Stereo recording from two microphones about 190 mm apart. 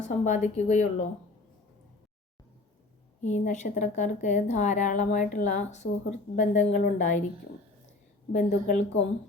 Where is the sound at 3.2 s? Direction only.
40° left (ahead or behind).